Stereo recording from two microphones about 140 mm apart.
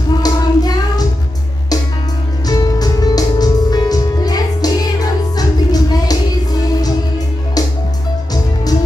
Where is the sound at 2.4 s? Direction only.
30° left (ahead or behind).